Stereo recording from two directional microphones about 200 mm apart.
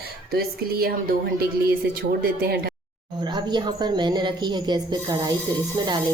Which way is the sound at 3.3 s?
20° right (ahead or behind).